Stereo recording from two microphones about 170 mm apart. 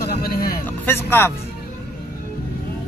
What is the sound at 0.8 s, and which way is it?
Speech, 15° left (ahead or behind).